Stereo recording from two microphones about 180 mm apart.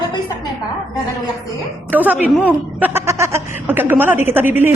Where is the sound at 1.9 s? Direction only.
10° right (ahead or behind).